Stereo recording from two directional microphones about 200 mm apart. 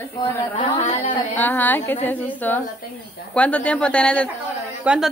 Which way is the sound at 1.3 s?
10° left (ahead or behind).